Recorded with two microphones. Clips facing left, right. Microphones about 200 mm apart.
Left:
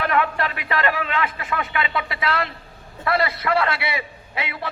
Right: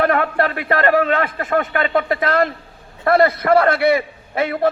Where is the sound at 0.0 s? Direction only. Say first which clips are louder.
Right 5 dB; 45° right (ahead or behind).